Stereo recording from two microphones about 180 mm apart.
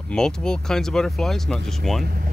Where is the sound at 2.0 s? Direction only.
55° right (ahead or behind).